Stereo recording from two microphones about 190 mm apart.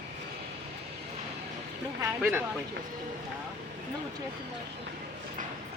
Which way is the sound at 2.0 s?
10° right (ahead or behind).